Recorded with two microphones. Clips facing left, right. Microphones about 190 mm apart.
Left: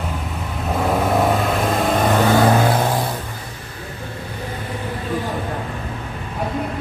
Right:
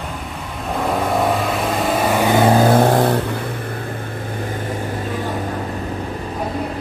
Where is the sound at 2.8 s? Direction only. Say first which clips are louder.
Right 7 dB; 65° right (ahead or behind).